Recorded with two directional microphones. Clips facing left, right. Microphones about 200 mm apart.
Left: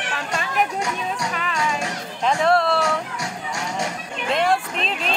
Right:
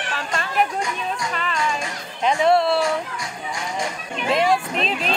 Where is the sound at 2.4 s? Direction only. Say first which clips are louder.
Right 2 dB; centre (ahead or behind).